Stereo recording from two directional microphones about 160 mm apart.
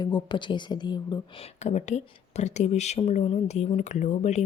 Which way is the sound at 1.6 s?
45° left (ahead or behind).